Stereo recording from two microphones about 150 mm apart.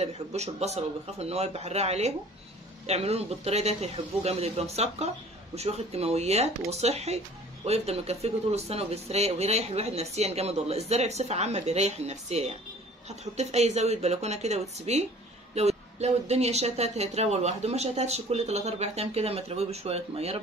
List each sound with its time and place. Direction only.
0.0 s speech: 45° right (ahead or behind)